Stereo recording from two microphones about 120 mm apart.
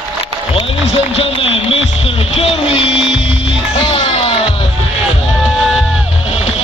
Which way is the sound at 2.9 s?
5° right (ahead or behind).